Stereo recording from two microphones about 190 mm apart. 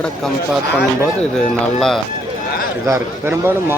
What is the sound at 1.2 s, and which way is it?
Speech, 5° left (ahead or behind).